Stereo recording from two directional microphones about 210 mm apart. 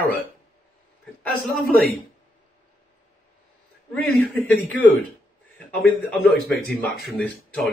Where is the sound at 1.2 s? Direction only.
5° left (ahead or behind).